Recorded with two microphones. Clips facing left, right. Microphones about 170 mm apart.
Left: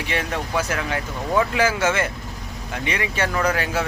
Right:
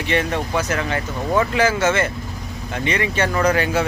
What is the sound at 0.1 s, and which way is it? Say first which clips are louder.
Speech: right 5 dB; 5° left (ahead or behind).